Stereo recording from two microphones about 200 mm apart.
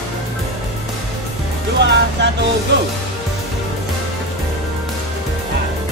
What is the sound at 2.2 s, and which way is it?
Vehicle, 60° right (ahead or behind).